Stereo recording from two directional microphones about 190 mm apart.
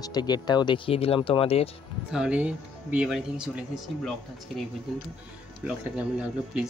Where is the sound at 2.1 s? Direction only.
5° right (ahead or behind).